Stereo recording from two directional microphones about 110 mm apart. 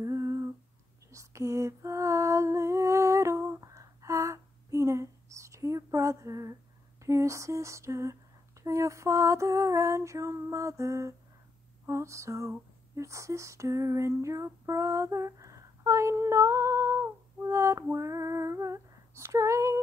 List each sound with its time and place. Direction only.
0.0 s humming: 30° right (ahead or behind)
1.1 s lullaby: 30° right (ahead or behind)
7.0 s a sound: 25° right (ahead or behind)
17.9 s female singing: 30° right (ahead or behind)